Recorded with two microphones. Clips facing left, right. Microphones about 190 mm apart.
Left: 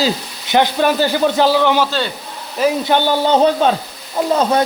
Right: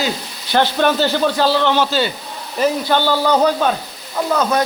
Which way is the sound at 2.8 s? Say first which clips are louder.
Left 1 dB; 20° left (ahead or behind).